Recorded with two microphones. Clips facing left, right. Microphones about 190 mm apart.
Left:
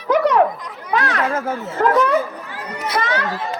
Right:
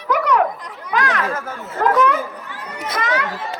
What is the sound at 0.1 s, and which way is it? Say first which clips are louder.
Chatter: left 3 dB; 30° left (ahead or behind).